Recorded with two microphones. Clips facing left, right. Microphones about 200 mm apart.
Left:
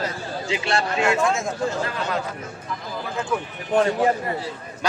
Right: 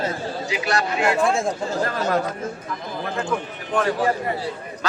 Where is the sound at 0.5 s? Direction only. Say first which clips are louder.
Left 1 dB; 25° left (ahead or behind).